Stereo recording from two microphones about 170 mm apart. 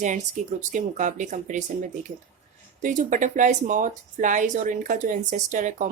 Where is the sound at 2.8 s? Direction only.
50° right (ahead or behind).